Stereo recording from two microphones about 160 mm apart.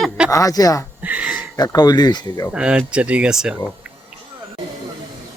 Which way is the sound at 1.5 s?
25° left (ahead or behind).